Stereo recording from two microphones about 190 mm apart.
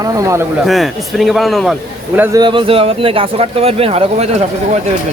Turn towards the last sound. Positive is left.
turn(degrees=-35)  # may be behind; listen again after turning